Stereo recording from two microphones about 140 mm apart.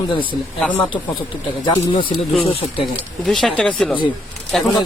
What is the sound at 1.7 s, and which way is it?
Speech, 35° left (ahead or behind).